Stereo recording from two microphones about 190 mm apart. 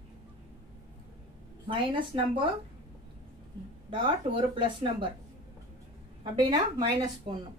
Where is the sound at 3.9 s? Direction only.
25° right (ahead or behind).